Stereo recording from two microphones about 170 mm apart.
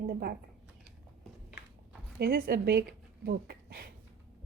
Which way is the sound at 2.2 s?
60° right (ahead or behind).